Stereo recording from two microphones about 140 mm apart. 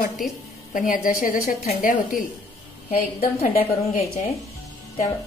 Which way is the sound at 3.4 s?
75° left (ahead or behind).